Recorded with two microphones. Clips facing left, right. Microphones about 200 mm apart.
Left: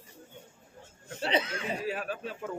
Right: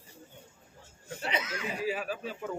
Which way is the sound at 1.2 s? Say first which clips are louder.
Left 5 dB; 30° left (ahead or behind).